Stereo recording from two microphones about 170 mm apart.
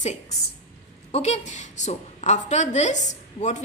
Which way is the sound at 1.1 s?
40° left (ahead or behind).